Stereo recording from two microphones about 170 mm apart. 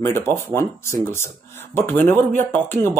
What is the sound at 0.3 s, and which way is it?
Speech, 15° left (ahead or behind).